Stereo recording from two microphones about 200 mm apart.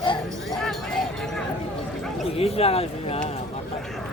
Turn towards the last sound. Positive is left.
turn(degrees=30)  # may be behind; listen again after turning